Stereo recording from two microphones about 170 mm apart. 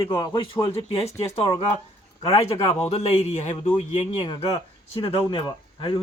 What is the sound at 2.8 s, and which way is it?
Speech, 40° left (ahead or behind).